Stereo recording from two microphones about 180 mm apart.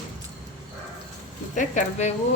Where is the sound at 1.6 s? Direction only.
45° left (ahead or behind).